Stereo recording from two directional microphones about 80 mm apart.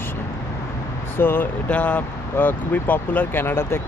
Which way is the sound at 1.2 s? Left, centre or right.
Left.